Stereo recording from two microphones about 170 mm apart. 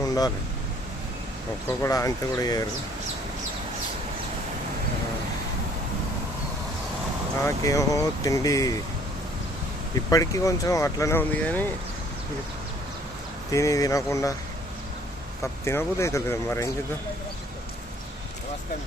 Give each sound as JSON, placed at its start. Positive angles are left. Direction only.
{"t": 0.0, "sound": "vehicle", "side_deg": 20}
{"t": 1.8, "sound": "speech", "side_deg": 20}
{"t": 7.4, "sound": "speech", "side_deg": 20}
{"t": 10.1, "sound": "speech", "side_deg": 20}
{"t": 13.5, "sound": "speech", "side_deg": 20}
{"t": 15.6, "sound": "speech", "side_deg": 15}